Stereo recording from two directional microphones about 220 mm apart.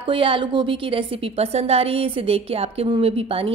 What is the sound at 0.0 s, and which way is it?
A woman's voice, 25° right (ahead or behind).